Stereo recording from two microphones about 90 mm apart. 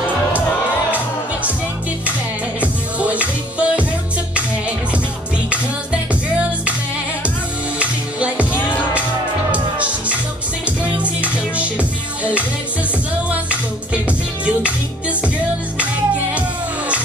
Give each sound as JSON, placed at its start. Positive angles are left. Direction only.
{"t": 2.6, "sound": "music", "side_deg": -15}
{"t": 7.8, "sound": "music", "side_deg": -15}
{"t": 9.5, "sound": "music", "side_deg": -15}